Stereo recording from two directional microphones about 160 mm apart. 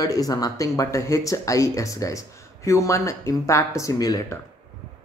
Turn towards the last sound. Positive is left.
turn(degrees=25)  # may be behind; listen again after turning